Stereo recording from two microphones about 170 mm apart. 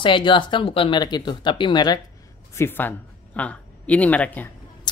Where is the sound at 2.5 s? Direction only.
10° left (ahead or behind).